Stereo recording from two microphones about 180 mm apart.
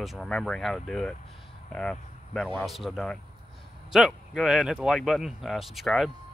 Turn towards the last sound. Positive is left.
turn(degrees=0)  # may be behind; listen again after turning